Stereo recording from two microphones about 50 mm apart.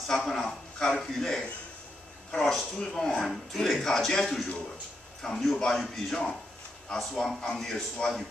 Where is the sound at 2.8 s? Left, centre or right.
Centre.